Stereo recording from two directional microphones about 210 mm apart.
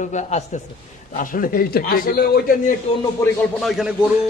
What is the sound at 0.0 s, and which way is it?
A man's voice, 35° left (ahead or behind).